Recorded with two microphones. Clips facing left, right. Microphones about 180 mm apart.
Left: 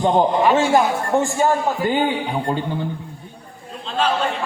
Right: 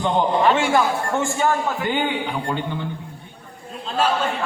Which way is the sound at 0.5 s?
40° left (ahead or behind).